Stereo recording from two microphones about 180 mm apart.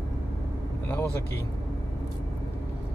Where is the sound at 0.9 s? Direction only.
10° left (ahead or behind).